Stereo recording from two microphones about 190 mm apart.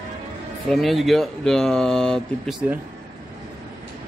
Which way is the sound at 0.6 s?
Centre (ahead or behind).